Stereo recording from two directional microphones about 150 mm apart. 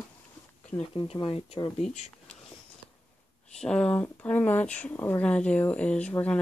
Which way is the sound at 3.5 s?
5° left (ahead or behind).